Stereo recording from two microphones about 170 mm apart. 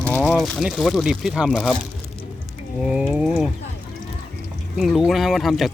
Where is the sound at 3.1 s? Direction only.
5° right (ahead or behind).